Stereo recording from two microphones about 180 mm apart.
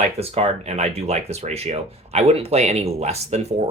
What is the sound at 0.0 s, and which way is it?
Speech, 35° right (ahead or behind).